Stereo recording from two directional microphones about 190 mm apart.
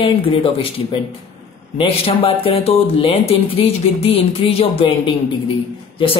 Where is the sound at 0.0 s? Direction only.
30° left (ahead or behind).